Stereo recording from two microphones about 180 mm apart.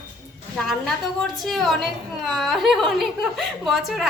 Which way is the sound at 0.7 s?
Centre (ahead or behind).